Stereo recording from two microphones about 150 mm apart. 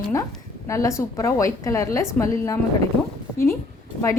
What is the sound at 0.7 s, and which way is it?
Speech, 20° left (ahead or behind).